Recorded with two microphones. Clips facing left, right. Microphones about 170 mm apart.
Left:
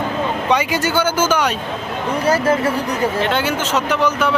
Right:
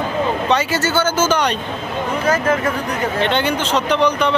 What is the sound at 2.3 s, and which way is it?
Speech, 35° left (ahead or behind).